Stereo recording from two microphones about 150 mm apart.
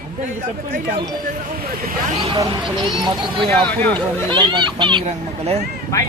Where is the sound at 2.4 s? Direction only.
35° right (ahead or behind).